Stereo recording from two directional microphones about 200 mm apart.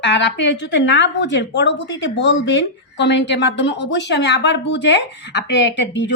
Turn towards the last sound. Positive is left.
turn(degrees=65)  # may be behind; listen again after turning